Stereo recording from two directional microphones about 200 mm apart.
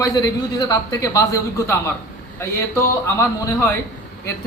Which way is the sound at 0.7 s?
15° left (ahead or behind).